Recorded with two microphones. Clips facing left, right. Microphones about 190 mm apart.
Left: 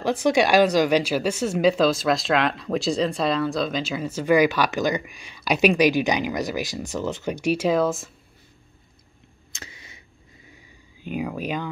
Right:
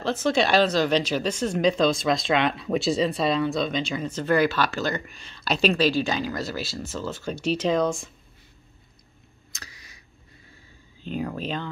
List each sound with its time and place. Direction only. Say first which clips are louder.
0.0 s speech: left 3 dB; 15° left (ahead or behind)
9.5 s tick: left 4 dB; 25° left (ahead or behind)
10.5 s a sound: left 2 dB; 10° left (ahead or behind)